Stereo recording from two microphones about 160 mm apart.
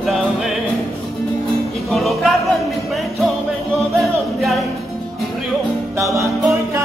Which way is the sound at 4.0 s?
Centre (ahead or behind).